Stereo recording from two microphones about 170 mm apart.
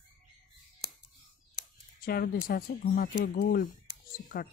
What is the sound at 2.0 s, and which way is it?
Speech, 60° left (ahead or behind).